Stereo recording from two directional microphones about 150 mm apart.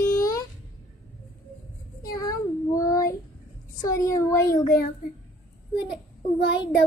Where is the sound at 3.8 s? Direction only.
25° left (ahead or behind).